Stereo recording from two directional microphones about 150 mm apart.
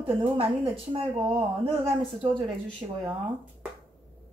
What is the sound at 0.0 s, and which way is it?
Speech, 40° right (ahead or behind).